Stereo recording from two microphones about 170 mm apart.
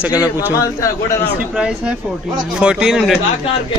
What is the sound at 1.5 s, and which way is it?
A man's voice, 5° right (ahead or behind).